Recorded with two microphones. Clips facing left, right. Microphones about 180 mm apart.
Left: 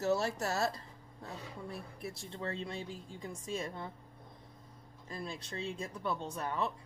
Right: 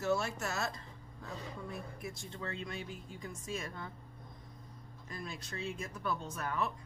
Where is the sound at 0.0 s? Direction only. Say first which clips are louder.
Left 2 dB; 35° left (ahead or behind).